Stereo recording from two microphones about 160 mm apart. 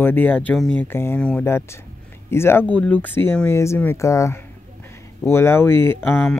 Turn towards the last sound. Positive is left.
turn(degrees=10)  # may be behind; listen again after turning